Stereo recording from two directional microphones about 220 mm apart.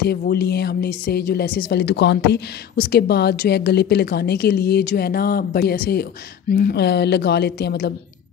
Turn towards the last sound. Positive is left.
turn(degrees=45)  # may be behind; listen again after turning